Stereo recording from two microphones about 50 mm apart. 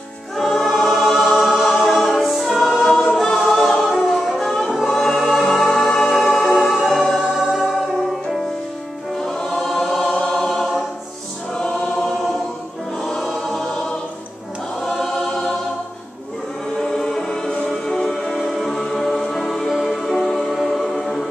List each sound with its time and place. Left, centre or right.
0.4 s choir: centre
4.9 s music: centre
9.2 s choir: centre
11.5 s choir: centre
13.0 s choir: centre
16.8 s choir: centre
17.8 s music: centre